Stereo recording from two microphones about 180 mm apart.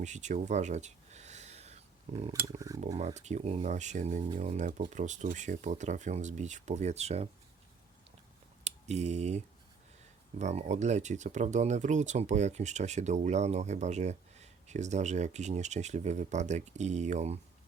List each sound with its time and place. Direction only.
0.0 s a sound: 40° right (ahead or behind)
2.1 s speech: 30° right (ahead or behind)
2.6 s speech: 20° right (ahead or behind)
3.0 s speech: 40° right (ahead or behind)
8.6 s speech: 40° right (ahead or behind)